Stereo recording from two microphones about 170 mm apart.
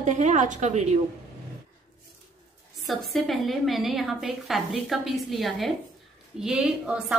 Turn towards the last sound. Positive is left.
turn(degrees=-5)  # may be behind; listen again after turning